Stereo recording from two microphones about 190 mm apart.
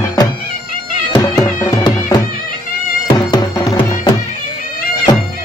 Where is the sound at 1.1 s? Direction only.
10° left (ahead or behind).